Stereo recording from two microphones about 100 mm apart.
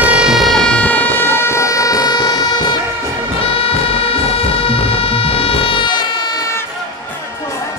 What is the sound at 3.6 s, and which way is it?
Music, 70° left (ahead or behind).